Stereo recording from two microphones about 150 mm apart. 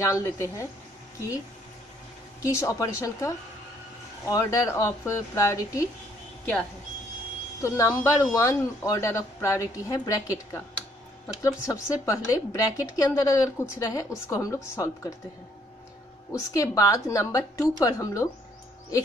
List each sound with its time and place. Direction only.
0.0 s a woman's voice: 20° left (ahead or behind)
2.4 s a woman's voice: 20° left (ahead or behind)
7.6 s a woman's voice: 20° left (ahead or behind)
16.3 s a woman's voice: 20° left (ahead or behind)